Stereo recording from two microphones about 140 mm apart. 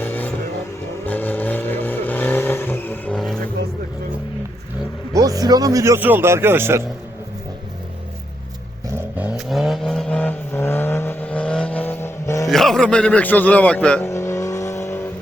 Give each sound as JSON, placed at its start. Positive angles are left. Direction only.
{"t": 0.0, "sound": "vehicle", "side_deg": 10}
{"t": 5.1, "sound": "speech", "side_deg": -25}
{"t": 9.1, "sound": "vehicle", "side_deg": -10}
{"t": 12.5, "sound": "a man's voice", "side_deg": 0}
{"t": 14.1, "sound": "vehicle", "side_deg": 20}